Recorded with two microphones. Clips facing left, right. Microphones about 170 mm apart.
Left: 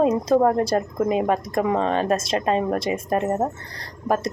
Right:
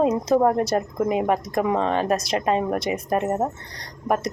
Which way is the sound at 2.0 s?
25° left (ahead or behind).